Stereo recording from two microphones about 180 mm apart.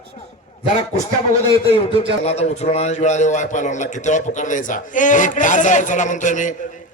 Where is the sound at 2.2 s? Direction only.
35° left (ahead or behind).